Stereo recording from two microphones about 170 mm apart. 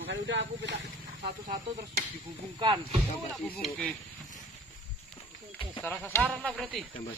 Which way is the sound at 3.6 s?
5° left (ahead or behind).